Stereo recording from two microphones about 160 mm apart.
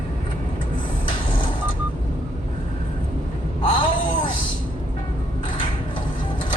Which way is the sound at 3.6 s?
30° left (ahead or behind).